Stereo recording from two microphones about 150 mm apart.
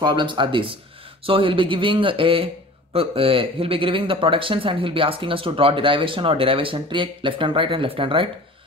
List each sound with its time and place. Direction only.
0.0 s a man's voice: 30° right (ahead or behind)